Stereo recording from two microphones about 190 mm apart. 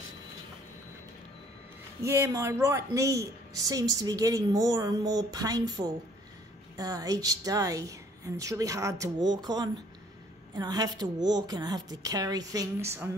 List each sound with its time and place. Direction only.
2.0 s a woman's voice: 15° right (ahead or behind)